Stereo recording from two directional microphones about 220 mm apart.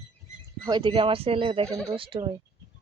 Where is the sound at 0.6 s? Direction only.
20° right (ahead or behind).